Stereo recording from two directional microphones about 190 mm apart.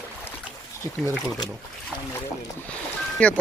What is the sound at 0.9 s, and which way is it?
Speech, 15° left (ahead or behind).